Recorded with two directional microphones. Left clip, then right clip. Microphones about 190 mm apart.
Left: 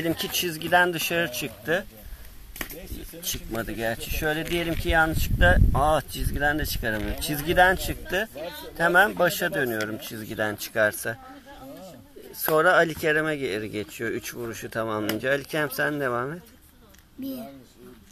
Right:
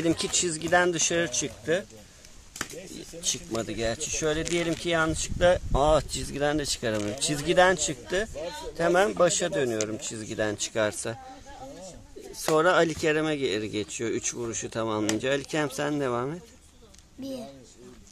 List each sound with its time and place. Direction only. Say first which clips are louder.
0.0 s speech: even; 20° right (ahead or behind)
3.2 s speech: right 1 dB; 15° right (ahead or behind)
8.4 s speech: even; 30° right (ahead or behind)
8.7 s speech: left 3 dB; 10° right (ahead or behind)
12.4 s speech: left 2 dB; 15° right (ahead or behind)